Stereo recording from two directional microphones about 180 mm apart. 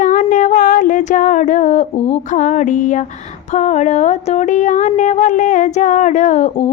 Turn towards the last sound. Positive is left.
turn(degrees=40)  # may be behind; listen again after turning